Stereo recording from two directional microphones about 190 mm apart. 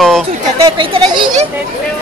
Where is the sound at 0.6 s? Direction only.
25° right (ahead or behind).